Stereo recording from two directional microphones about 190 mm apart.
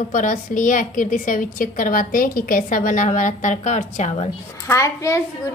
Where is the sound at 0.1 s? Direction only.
45° left (ahead or behind).